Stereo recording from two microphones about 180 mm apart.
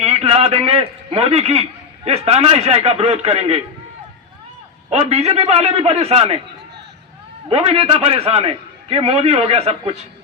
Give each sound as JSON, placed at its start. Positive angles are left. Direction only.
{"t": 0.0, "sound": "a man's voice", "side_deg": -35}
{"t": 4.9, "sound": "a man's voice", "side_deg": -35}
{"t": 7.5, "sound": "a man's voice", "side_deg": -35}